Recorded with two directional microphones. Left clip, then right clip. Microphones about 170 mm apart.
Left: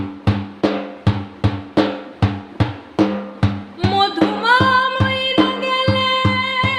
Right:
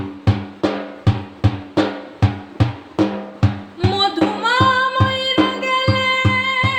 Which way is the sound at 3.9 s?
15° left (ahead or behind).